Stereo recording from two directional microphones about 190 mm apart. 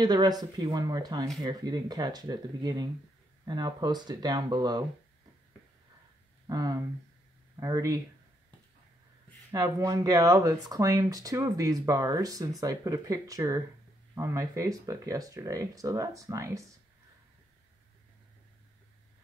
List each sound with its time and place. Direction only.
0.0 s speech: 20° right (ahead or behind)
6.4 s speech: 20° right (ahead or behind)
9.5 s speech: 20° right (ahead or behind)